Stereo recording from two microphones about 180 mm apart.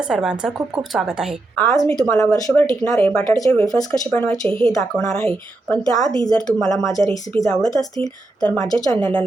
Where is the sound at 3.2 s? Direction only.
20° left (ahead or behind).